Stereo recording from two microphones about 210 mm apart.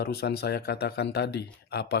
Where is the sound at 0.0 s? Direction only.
50° left (ahead or behind).